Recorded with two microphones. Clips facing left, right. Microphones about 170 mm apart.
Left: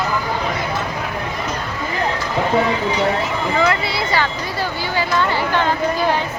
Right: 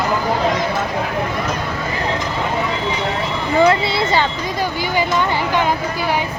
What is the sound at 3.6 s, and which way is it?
Speech, 25° right (ahead or behind).